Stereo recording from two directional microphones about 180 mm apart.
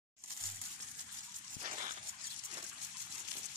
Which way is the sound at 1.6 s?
45° right (ahead or behind).